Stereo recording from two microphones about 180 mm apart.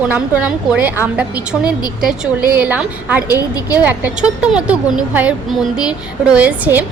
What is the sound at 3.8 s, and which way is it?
A woman's voice, 5° right (ahead or behind).